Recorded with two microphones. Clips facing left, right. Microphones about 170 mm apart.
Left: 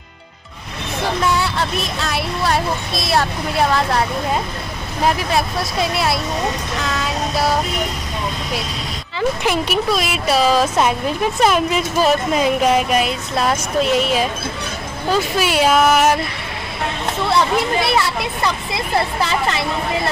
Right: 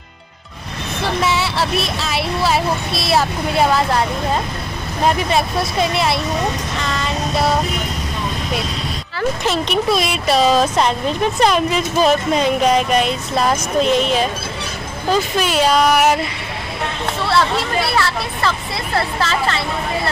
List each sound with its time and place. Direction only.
1.2 s speech: 5° right (ahead or behind)
5.0 s speech: centre (ahead or behind)
9.4 s speech: 10° left (ahead or behind)
9.8 s speech: centre (ahead or behind)
15.3 s speech: 10° left (ahead or behind)
17.3 s speech: 20° left (ahead or behind)